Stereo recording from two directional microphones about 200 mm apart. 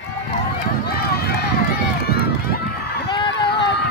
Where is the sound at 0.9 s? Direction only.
50° left (ahead or behind).